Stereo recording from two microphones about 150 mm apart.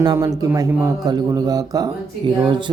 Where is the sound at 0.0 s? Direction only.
25° right (ahead or behind).